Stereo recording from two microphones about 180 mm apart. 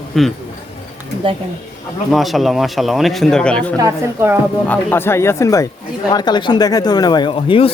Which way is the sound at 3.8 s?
15° right (ahead or behind).